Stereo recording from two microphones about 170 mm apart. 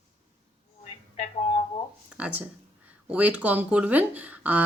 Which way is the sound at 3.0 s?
10° right (ahead or behind).